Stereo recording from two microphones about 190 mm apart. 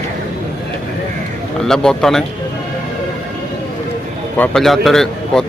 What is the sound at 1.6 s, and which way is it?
Speech, 5° left (ahead or behind).